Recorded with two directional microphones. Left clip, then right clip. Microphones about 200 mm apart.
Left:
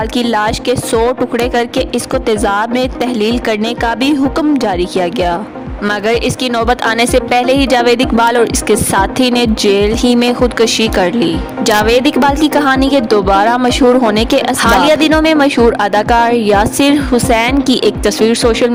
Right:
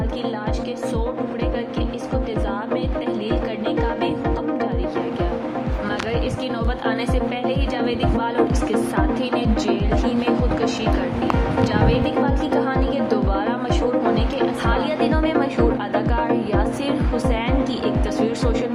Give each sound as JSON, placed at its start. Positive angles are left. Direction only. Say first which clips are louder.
{"t": 0.2, "sound": "speech", "louder": "left 15 dB", "side_deg": 60}
{"t": 2.6, "sound": "speech", "louder": "left 11 dB", "side_deg": 60}
{"t": 4.4, "sound": "speech", "louder": "left 11 dB", "side_deg": 60}
{"t": 6.7, "sound": "speech", "louder": "left 13 dB", "side_deg": 60}
{"t": 11.9, "sound": "speech", "louder": "left 11 dB", "side_deg": 60}